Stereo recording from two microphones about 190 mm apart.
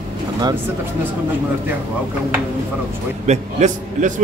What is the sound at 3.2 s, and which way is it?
Speech, 40° right (ahead or behind).